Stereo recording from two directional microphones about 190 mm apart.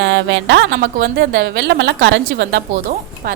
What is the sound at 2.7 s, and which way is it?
Speech, 40° right (ahead or behind).